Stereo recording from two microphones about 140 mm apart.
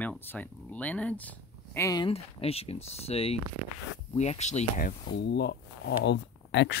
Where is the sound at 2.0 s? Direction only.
45° left (ahead or behind).